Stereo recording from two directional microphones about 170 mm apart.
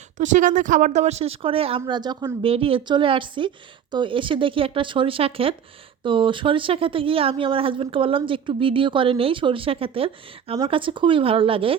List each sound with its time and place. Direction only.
0.2 s speech: 45° right (ahead or behind)